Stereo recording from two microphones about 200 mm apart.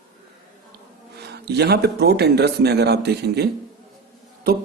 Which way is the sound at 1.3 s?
55° right (ahead or behind).